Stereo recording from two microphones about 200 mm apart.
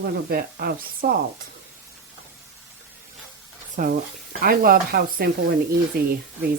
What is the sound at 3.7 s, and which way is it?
Speech, 40° right (ahead or behind).